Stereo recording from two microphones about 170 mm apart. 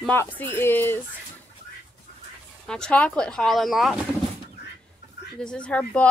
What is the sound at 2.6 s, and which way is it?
Speech, 5° left (ahead or behind).